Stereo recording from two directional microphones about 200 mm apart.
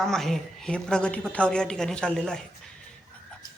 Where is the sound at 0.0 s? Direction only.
Centre (ahead or behind).